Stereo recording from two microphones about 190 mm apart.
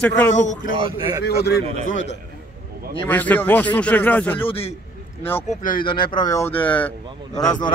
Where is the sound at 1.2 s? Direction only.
55° left (ahead or behind).